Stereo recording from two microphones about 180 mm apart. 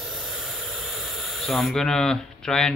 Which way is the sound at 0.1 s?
Centre (ahead or behind).